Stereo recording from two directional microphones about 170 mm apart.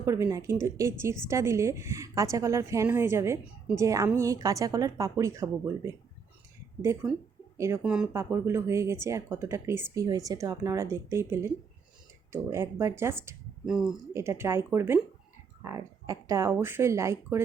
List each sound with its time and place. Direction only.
0.0 s a woman's voice: 20° right (ahead or behind)
7.5 s speech: 15° right (ahead or behind)
7.8 s speech: 5° right (ahead or behind)
13.7 s speech: 5° right (ahead or behind)
14.1 s speech: 15° right (ahead or behind)